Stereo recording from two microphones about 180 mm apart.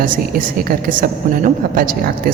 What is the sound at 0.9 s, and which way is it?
Speech, 50° right (ahead or behind).